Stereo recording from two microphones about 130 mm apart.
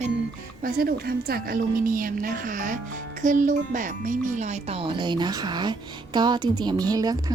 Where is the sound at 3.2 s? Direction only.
80° right.